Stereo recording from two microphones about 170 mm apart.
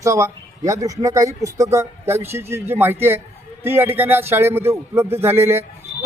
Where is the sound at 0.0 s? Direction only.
20° right (ahead or behind).